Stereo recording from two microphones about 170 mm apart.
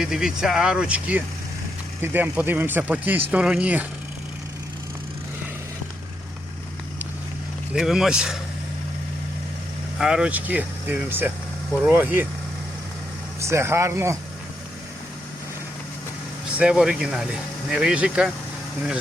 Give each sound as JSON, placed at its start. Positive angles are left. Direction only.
{"t": 0.0, "sound": "speech", "side_deg": 0}
{"t": 7.7, "sound": "speech", "side_deg": 0}
{"t": 10.0, "sound": "speech", "side_deg": -5}
{"t": 13.4, "sound": "speech", "side_deg": -15}
{"t": 16.6, "sound": "speech", "side_deg": -5}